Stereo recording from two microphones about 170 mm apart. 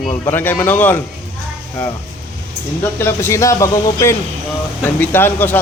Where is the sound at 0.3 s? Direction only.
10° left (ahead or behind).